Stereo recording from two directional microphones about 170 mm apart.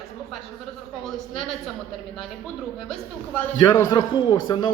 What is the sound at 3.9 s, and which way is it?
Speech, 25° left (ahead or behind).